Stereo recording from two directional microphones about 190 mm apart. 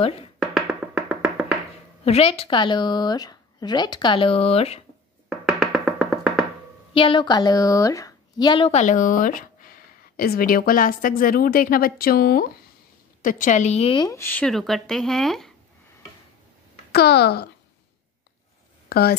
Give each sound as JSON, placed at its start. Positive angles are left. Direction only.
{"t": 0.4, "sound": "music", "side_deg": 0}
{"t": 2.0, "sound": "speech", "side_deg": 30}
{"t": 5.4, "sound": "music", "side_deg": 0}
{"t": 6.9, "sound": "a woman's voice", "side_deg": 25}
{"t": 16.9, "sound": "speech", "side_deg": 55}
{"t": 18.9, "sound": "speech", "side_deg": 55}